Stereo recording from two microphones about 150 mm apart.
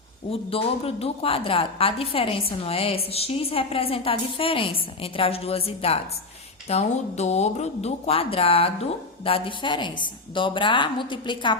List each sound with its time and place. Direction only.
0.3 s a woman's voice: 40° left (ahead or behind)